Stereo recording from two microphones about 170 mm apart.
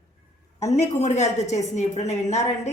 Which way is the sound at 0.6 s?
40° left (ahead or behind).